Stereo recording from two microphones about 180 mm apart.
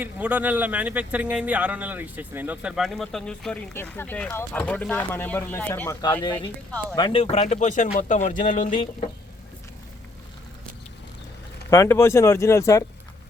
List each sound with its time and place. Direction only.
0.0 s speech: 10° right (ahead or behind); by 6.0 s 10° left (ahead or behind)
6.9 s speech: 25° left (ahead or behind); by 8.5 s 45° left (ahead or behind)
8.5 s speech: 30° left (ahead or behind)
11.7 s speech: 15° left (ahead or behind)